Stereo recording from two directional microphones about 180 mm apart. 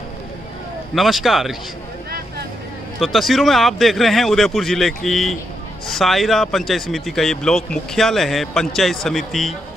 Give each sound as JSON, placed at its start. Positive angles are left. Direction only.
{"t": 0.9, "sound": "speech", "side_deg": 0}
{"t": 2.0, "sound": "vehicle", "side_deg": -60}
{"t": 3.0, "sound": "speech", "side_deg": 0}